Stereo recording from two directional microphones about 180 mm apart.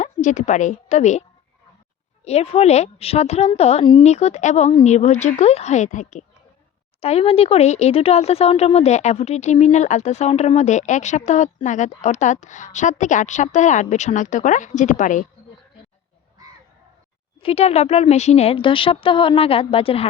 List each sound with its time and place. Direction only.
0.0 s a woman's voice: 45° left (ahead or behind)
2.2 s speech: 35° left (ahead or behind)
17.4 s speech: 35° left (ahead or behind)